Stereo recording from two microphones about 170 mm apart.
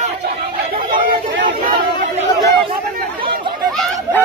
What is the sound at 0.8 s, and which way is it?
Chatter, 55° right (ahead or behind).